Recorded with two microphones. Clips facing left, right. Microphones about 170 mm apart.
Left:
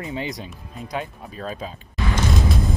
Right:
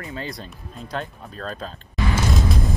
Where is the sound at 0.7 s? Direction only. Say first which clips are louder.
Left 1 dB; 5° left (ahead or behind).